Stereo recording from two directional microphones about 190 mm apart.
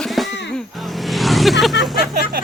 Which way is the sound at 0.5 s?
Centre (ahead or behind).